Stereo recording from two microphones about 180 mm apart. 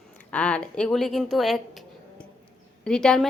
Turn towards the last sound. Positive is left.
turn(degrees=5)  # may be behind; listen again after turning